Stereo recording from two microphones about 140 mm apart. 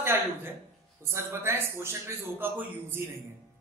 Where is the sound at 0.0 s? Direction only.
15° right (ahead or behind).